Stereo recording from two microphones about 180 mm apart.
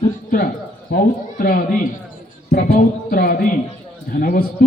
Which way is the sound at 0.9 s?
50° left (ahead or behind).